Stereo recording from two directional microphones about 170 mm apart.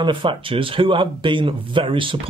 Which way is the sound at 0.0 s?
30° right (ahead or behind).